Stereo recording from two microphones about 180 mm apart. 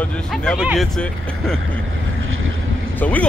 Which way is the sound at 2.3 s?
90° right.